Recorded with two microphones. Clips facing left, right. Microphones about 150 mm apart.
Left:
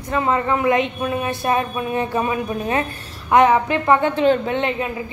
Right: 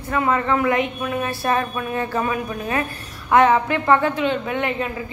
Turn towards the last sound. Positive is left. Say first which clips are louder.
# left 2 dB
turn(degrees=25)  # may be behind; listen again after turning